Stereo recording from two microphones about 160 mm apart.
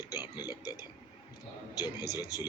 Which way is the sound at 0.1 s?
25° left (ahead or behind).